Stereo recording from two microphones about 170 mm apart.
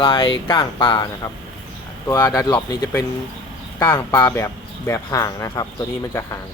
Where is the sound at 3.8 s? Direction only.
10° left (ahead or behind).